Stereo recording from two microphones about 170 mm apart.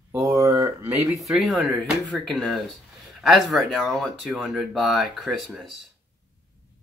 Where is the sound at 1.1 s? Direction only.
Centre (ahead or behind).